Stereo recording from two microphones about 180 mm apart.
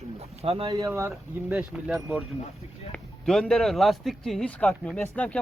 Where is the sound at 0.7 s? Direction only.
15° right (ahead or behind).